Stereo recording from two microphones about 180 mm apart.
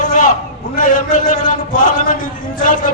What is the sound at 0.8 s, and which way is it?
Speech, 45° left (ahead or behind).